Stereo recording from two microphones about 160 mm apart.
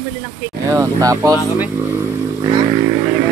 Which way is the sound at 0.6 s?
20° right (ahead or behind).